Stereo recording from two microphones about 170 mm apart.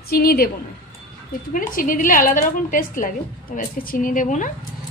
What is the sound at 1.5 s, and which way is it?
A woman's voice, 55° left (ahead or behind).